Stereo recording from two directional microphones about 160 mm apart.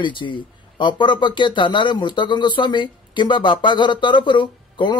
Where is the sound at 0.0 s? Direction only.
30° left (ahead or behind).